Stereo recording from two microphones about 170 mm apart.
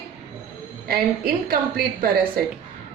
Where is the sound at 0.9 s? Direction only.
65° right (ahead or behind).